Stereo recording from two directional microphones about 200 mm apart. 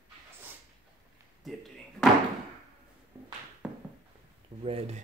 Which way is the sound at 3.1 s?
20° right (ahead or behind).